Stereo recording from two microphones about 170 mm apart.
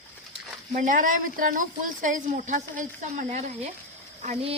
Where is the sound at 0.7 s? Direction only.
50° right (ahead or behind).